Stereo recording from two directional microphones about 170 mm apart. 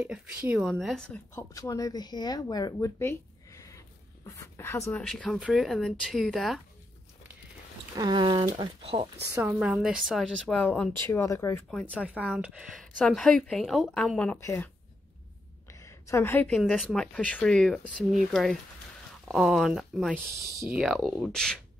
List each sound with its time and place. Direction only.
0.0 s speech: 10° right (ahead or behind)
1.3 s speech: 20° left (ahead or behind)
5.0 s speech: 5° left (ahead or behind)
7.9 s speech: 25° right (ahead or behind)
9.3 s speech: 10° right (ahead or behind); by 11.6 s 15° left (ahead or behind)
12.0 s speech: 5° right (ahead or behind); by 14.7 s 15° left (ahead or behind)
15.7 s speech: 15° left (ahead or behind)